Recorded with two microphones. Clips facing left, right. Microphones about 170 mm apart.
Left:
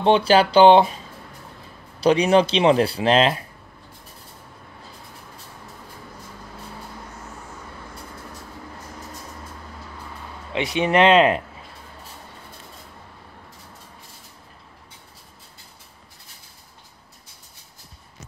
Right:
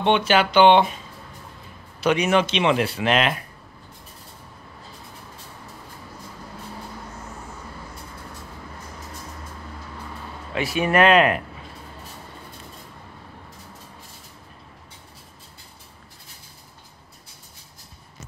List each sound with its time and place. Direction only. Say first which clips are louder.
0.0 s speech: left 3 dB; 35° left (ahead or behind)
2.0 s speech: left 3 dB; 35° left (ahead or behind)
10.5 s speech: left 1 dB; 20° left (ahead or behind)